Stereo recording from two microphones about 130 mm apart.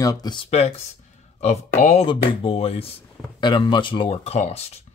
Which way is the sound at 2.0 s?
45° left (ahead or behind).